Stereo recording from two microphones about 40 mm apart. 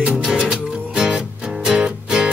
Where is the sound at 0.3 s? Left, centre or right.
Centre.